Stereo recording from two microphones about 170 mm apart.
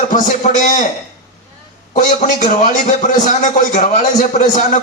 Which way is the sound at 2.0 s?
50° left (ahead or behind).